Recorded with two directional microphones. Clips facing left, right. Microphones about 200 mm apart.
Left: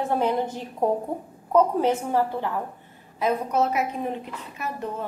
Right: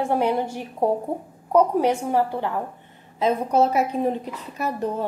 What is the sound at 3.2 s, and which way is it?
A woman's voice, 30° right (ahead or behind).